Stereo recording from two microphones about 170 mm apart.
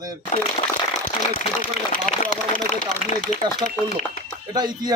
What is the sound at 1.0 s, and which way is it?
Speech, 55° left (ahead or behind).